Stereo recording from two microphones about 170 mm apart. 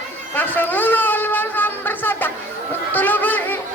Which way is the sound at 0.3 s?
10° left (ahead or behind).